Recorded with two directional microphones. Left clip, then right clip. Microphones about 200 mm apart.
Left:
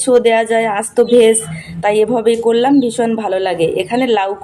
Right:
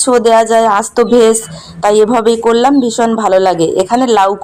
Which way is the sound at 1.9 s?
25° right (ahead or behind).